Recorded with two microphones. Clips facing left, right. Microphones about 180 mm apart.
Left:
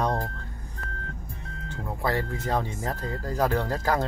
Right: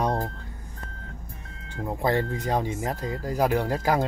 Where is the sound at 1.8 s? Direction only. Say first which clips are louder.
Right 4 dB; 20° right (ahead or behind).